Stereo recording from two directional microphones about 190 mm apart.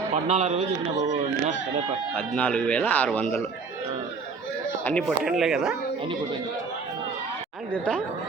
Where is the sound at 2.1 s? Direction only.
10° left (ahead or behind).